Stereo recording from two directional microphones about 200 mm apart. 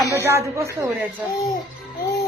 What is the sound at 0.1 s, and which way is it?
Speech, 15° right (ahead or behind).